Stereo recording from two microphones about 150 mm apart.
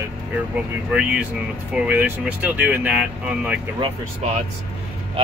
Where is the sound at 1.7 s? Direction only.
10° right (ahead or behind).